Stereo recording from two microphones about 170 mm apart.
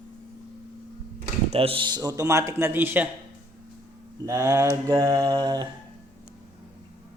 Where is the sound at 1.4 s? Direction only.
35° right (ahead or behind); by 3.1 s 10° right (ahead or behind).